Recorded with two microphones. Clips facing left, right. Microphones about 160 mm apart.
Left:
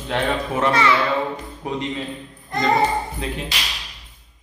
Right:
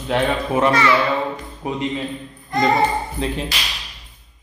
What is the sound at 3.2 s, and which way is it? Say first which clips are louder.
Speech: right 4 dB; 30° right (ahead or behind).